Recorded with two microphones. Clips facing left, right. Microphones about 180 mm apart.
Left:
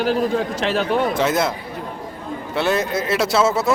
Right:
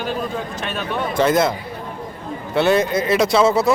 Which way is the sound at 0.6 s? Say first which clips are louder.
Left 6 dB; 80° left.